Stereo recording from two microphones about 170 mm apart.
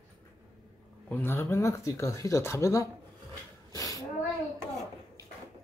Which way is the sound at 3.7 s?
20° left (ahead or behind).